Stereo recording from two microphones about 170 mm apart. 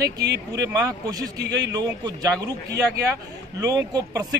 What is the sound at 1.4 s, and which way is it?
Speech, 90° right.